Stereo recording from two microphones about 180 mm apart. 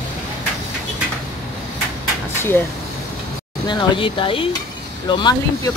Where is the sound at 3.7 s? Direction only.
25° left (ahead or behind).